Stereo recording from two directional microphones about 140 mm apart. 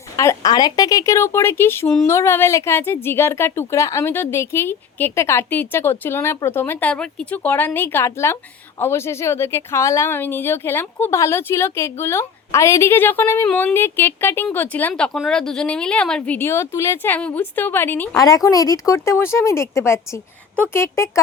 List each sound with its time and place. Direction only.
0.2 s speech: 25° left (ahead or behind)
18.2 s speech: 25° left (ahead or behind)